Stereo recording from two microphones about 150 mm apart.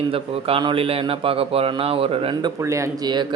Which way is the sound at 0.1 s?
40° right (ahead or behind).